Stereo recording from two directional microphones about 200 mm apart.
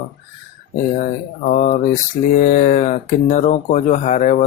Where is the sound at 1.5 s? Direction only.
40° left (ahead or behind).